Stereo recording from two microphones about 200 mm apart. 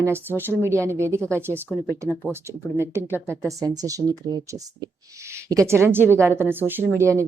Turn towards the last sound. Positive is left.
turn(degrees=-15)  # may be behind; listen again after turning